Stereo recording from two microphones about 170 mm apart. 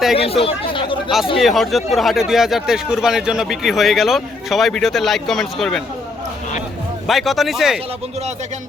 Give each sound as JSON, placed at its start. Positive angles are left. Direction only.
{"t": 0.2, "sound": "speech", "side_deg": 35}
{"t": 1.4, "sound": "speech", "side_deg": 0}
{"t": 7.1, "sound": "speech", "side_deg": 0}